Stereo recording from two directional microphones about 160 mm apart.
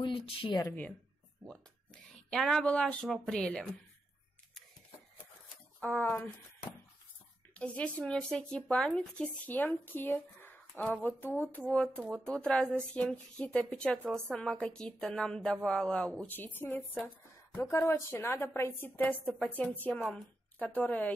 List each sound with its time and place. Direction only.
0.0 s speech: 30° left (ahead or behind)
2.3 s a woman's voice: 5° left (ahead or behind)
5.8 s speech: 5° left (ahead or behind)
7.5 s a woman's voice: 10° left (ahead or behind)
16.9 s a sound: centre (ahead or behind)
17.6 s speech: 15° left (ahead or behind)
19.2 s a woman's voice: centre (ahead or behind)
19.5 s speech: 10° left (ahead or behind)
19.9 s a woman's voice: centre (ahead or behind)